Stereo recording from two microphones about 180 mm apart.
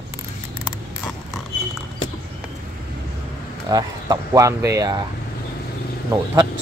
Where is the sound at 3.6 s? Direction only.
20° right (ahead or behind).